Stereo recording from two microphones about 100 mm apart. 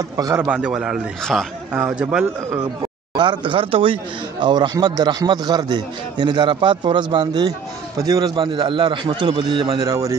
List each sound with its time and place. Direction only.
0.2 s a man's voice: 35° right (ahead or behind)
0.5 s speech: 10° right (ahead or behind)
2.8 s speech: 55° right (ahead or behind)
9.8 s a man's voice: 35° right (ahead or behind)